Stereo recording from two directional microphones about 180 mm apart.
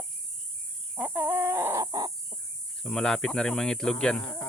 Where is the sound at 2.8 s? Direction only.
5° left (ahead or behind).